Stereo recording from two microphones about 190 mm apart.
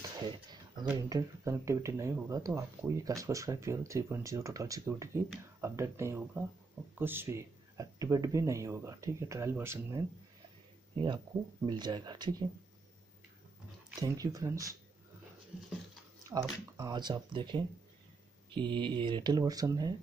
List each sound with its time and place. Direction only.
0.0 s a sound: 20° right (ahead or behind)
0.9 s speech: 20° right (ahead or behind)
11.6 s speech: 20° right (ahead or behind)
14.0 s speech: 20° right (ahead or behind)
16.7 s speech: 20° right (ahead or behind)